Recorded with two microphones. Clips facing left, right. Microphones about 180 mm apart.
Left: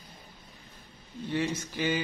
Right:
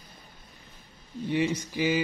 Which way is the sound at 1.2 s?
15° right (ahead or behind).